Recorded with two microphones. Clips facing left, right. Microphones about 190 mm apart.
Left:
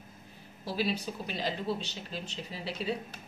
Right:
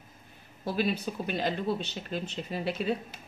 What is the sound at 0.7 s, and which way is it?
Speech, 55° right (ahead or behind).